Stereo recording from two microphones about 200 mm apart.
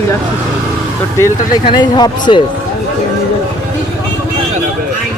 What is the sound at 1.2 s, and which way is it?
Speech, 20° left (ahead or behind).